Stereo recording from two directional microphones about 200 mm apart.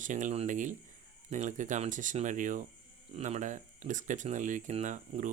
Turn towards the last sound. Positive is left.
turn(degrees=-35)  # may be behind; listen again after turning